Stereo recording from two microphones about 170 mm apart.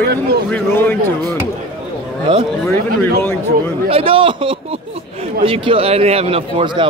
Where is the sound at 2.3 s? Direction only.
30° right (ahead or behind).